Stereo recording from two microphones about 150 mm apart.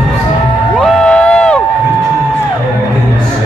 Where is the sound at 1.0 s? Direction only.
5° left (ahead or behind).